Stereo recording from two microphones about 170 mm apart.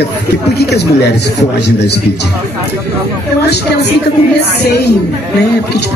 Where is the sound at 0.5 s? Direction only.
80° left.